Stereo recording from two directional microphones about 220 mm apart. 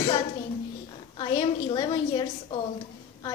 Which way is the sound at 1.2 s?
20° left (ahead or behind).